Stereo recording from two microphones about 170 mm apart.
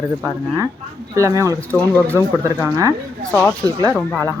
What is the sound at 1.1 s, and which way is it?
Speech, 20° right (ahead or behind).